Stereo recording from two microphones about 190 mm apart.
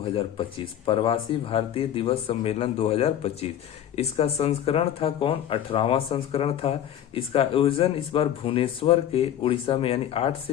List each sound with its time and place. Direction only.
0.9 s speech: 30° left (ahead or behind)